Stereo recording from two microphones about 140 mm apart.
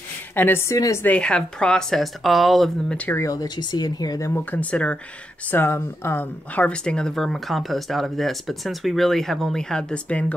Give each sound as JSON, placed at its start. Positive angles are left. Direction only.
{"t": 0.4, "sound": "speech", "side_deg": 15}
{"t": 1.0, "sound": "a woman's voice", "side_deg": 10}
{"t": 3.2, "sound": "speech", "side_deg": 25}
{"t": 4.3, "sound": "a woman's voice", "side_deg": 10}